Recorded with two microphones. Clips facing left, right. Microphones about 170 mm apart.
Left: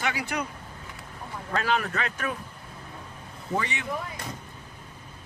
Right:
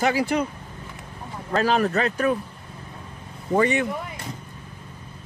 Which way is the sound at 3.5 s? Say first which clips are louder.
Right 10 dB; 50° right (ahead or behind).